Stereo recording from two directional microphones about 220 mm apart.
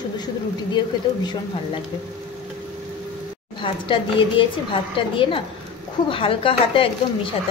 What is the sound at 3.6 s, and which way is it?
Speech, 25° left (ahead or behind).